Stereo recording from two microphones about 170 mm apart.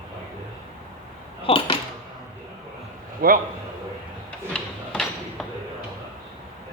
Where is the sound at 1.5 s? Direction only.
30° left (ahead or behind).